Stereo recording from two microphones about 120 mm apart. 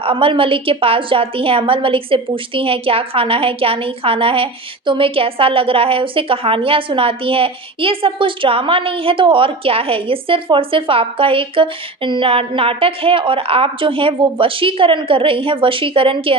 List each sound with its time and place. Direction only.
0.0 s a woman's voice: 50° right (ahead or behind)